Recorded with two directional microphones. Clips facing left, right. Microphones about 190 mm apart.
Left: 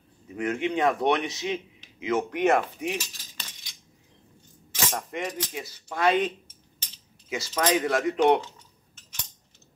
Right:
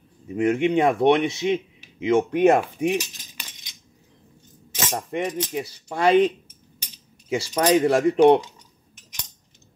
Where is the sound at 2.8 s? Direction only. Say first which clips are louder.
Right 8 dB; 15° right (ahead or behind).